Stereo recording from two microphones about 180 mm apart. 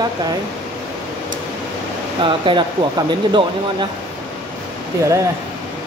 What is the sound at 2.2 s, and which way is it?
Speech, 30° right (ahead or behind).